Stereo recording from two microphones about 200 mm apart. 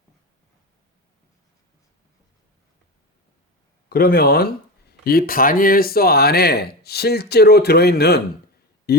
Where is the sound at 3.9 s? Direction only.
50° left (ahead or behind).